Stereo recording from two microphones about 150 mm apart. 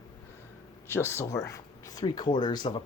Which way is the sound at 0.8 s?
15° left (ahead or behind).